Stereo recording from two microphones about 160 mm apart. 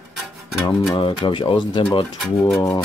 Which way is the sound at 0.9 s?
30° left (ahead or behind).